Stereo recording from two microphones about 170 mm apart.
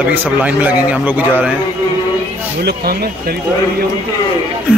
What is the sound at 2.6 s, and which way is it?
Speech, 70° right (ahead or behind).